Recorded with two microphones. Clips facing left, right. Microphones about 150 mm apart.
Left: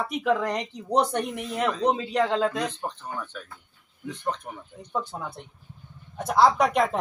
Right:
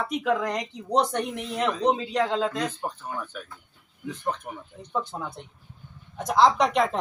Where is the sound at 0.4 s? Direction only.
10° left (ahead or behind).